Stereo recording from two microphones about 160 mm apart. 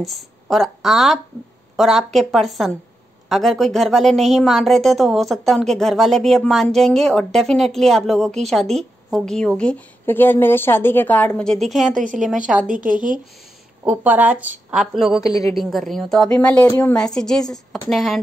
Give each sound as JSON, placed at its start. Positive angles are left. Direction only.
{"t": 0.0, "sound": "a woman's voice", "side_deg": 0}
{"t": 11.9, "sound": "a woman's voice", "side_deg": -55}
{"t": 13.8, "sound": "a woman's voice", "side_deg": -10}
{"t": 15.2, "sound": "a woman's voice", "side_deg": 20}
{"t": 15.5, "sound": "a woman's voice", "side_deg": 0}
{"t": 16.9, "sound": "a woman's voice", "side_deg": 5}